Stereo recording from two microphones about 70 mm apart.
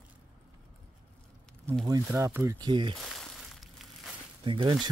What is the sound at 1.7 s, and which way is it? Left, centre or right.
Speech, right.